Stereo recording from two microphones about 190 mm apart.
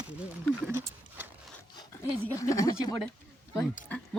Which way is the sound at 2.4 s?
15° left (ahead or behind).